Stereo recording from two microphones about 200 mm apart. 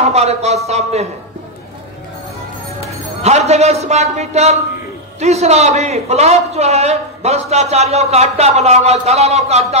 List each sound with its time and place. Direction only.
0.0 s a man's voice: 35° right (ahead or behind)
3.2 s a man's voice: 35° right (ahead or behind)